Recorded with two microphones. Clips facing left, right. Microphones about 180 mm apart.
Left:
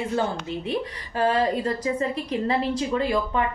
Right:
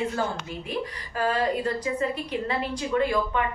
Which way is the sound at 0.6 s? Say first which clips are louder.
Left 3 dB; 30° left (ahead or behind).